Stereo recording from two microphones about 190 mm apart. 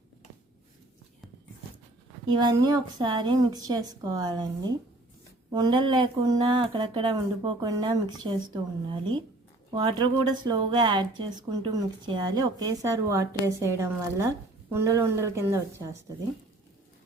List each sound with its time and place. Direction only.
2.3 s a woman's voice: 20° right (ahead or behind)
9.7 s a woman's voice: 20° right (ahead or behind)